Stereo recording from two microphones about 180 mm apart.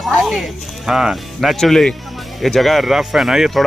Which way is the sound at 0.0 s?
Centre (ahead or behind).